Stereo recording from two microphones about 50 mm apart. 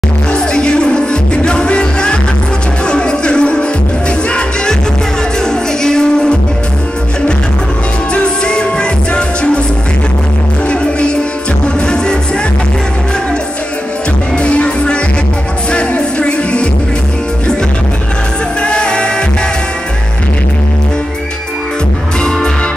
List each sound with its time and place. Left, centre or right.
0.3 s music: centre
5.5 s music: centre
8.1 s music: centre
10.7 s music: left
14.4 s music: left
18.6 s music: centre